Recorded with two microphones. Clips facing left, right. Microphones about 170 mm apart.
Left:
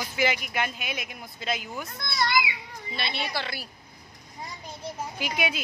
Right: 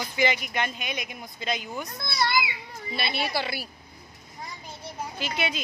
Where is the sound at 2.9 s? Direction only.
5° right (ahead or behind).